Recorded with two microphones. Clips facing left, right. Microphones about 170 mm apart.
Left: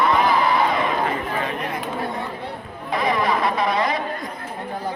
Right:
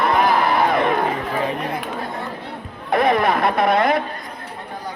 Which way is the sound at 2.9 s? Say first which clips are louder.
Right 4 dB; 55° right (ahead or behind).